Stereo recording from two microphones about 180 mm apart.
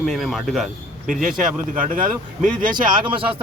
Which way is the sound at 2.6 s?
25° right (ahead or behind).